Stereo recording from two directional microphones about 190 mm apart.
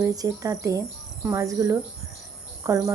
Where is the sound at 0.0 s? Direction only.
20° right (ahead or behind).